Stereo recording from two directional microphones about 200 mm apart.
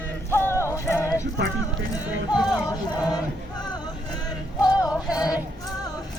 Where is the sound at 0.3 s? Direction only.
10° left (ahead or behind).